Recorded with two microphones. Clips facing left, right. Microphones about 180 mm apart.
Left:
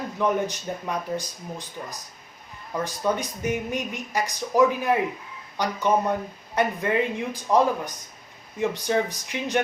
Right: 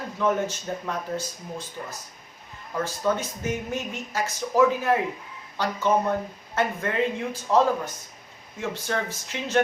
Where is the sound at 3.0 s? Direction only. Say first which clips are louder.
Left 1 dB; 15° left (ahead or behind).